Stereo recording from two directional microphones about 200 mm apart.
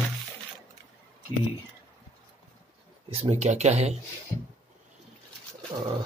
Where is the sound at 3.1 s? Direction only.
30° right (ahead or behind).